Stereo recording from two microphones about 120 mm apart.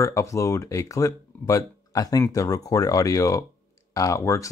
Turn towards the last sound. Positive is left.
turn(degrees=25)  # may be behind; listen again after turning